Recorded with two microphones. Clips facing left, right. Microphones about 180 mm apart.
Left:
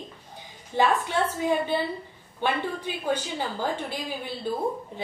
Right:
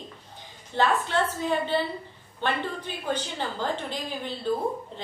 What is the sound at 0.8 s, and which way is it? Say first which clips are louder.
A woman's voice: left 1 dB; 10° left (ahead or behind).